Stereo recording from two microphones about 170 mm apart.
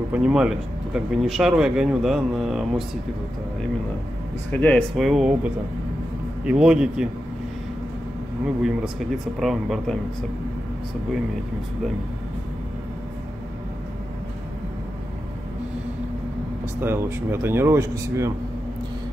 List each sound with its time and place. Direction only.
0.1 s speech: 5° right (ahead or behind)
4.5 s speech: 5° left (ahead or behind)
8.6 s speech: centre (ahead or behind)
16.8 s speech: 15° right (ahead or behind)